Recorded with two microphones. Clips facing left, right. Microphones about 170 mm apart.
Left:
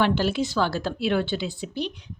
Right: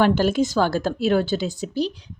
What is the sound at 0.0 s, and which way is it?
A woman's voice, 45° right (ahead or behind).